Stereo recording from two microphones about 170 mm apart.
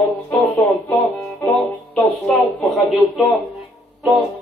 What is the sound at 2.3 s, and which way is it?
Speech, centre (ahead or behind).